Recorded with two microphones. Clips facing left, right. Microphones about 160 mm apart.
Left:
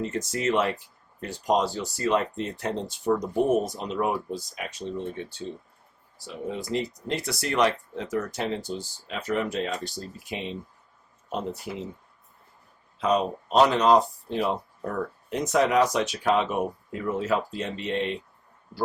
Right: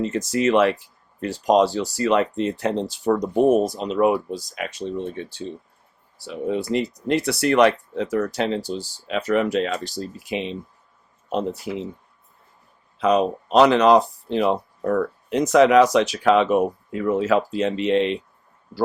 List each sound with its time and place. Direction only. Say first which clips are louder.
0.0 s speech: right 6 dB; 85° right
6.1 s speech: right 8 dB; 70° right (ahead or behind); by 11.7 s 90° right
13.0 s speech: right 5 dB; 85° right